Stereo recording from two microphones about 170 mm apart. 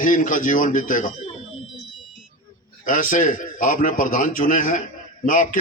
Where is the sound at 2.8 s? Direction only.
55° left (ahead or behind).